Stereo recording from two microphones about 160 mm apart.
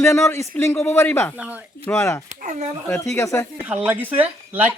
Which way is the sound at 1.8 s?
15° left (ahead or behind).